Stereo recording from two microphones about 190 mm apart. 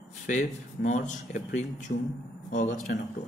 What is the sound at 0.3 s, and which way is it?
Speech, 40° left (ahead or behind).